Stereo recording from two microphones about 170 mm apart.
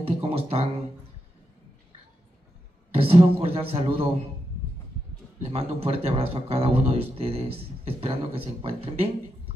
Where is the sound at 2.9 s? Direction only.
35° right (ahead or behind).